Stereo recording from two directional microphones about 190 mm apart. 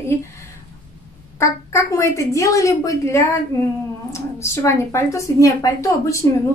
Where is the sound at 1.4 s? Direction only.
15° left (ahead or behind).